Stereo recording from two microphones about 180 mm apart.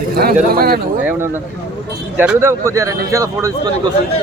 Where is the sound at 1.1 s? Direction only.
15° right (ahead or behind).